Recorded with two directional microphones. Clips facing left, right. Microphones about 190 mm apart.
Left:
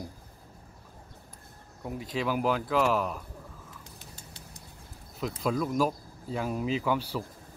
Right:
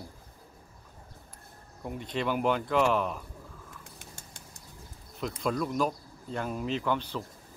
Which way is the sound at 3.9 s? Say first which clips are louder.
Left 1 dB; 50° right (ahead or behind).